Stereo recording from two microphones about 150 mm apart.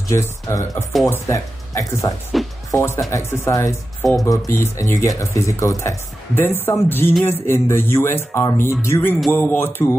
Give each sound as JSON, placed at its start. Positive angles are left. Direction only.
{"t": 0.1, "sound": "speech", "side_deg": 20}
{"t": 2.3, "sound": "speech", "side_deg": 0}
{"t": 2.7, "sound": "speech", "side_deg": 15}